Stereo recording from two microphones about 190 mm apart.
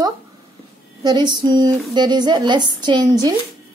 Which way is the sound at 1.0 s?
25° right (ahead or behind).